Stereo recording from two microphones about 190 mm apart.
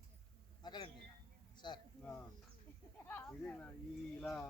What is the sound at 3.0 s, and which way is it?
Speech, 10° left (ahead or behind).